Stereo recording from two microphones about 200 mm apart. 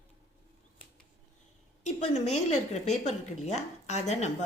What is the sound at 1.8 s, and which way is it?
A woman's voice, 35° left (ahead or behind).